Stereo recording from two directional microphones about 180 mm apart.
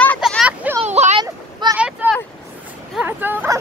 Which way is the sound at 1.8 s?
5° right (ahead or behind).